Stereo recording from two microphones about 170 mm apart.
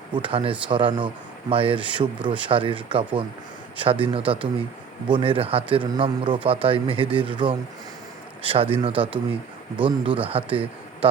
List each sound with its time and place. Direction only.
0.2 s a man's voice: 35° right (ahead or behind)